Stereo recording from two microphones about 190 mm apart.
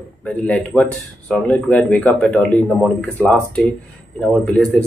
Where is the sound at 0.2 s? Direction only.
5° left (ahead or behind).